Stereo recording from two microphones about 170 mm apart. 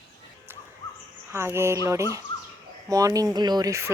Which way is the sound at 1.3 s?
15° right (ahead or behind).